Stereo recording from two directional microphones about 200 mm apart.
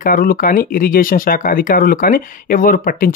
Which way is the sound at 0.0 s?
45° left (ahead or behind).